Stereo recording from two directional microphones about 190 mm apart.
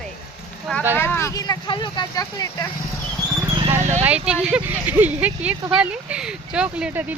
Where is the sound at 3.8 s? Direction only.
40° right (ahead or behind).